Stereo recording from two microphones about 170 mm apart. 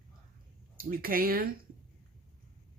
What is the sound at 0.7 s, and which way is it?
Speech, 60° right (ahead or behind).